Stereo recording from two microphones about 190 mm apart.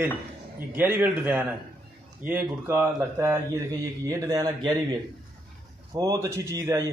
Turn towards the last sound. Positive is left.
turn(degrees=-15)  # may be behind; listen again after turning